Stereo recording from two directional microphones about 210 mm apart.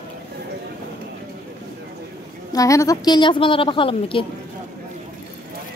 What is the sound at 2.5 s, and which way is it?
A woman's voice, 15° left (ahead or behind).